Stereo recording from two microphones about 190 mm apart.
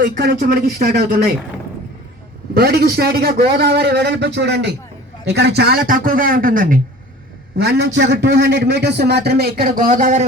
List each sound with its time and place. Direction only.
0.0 s a man's voice: 50° right (ahead or behind)
2.6 s a man's voice: 55° right (ahead or behind)
7.6 s a man's voice: 60° right (ahead or behind); by 10.2 s 40° right (ahead or behind)